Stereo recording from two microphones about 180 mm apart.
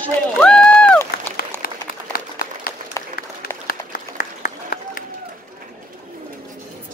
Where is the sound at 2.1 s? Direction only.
55° left (ahead or behind).